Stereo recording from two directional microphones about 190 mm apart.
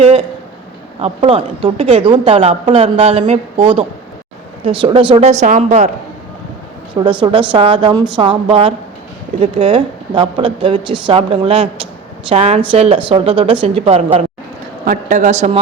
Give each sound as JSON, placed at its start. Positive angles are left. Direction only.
{"t": 0.0, "sound": "a sound", "side_deg": -30}
{"t": 0.9, "sound": "a woman's voice", "side_deg": -30}
{"t": 7.0, "sound": "a woman's voice", "side_deg": -25}
{"t": 14.8, "sound": "speech", "side_deg": -40}